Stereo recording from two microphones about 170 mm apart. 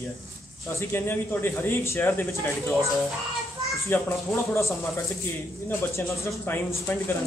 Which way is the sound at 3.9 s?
10° left (ahead or behind).